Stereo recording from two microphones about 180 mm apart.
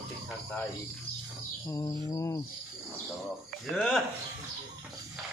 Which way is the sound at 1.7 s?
20° left (ahead or behind).